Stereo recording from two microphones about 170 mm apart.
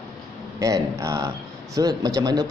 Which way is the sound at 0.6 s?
20° right (ahead or behind).